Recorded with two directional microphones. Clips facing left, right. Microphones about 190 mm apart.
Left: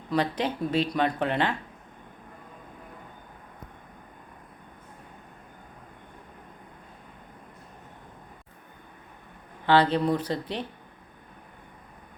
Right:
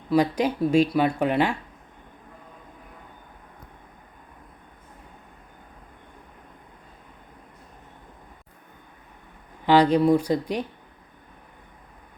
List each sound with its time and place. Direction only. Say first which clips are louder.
0.1 s speech: right 5 dB; 10° right (ahead or behind)
9.6 s speech: right 4 dB; 15° right (ahead or behind)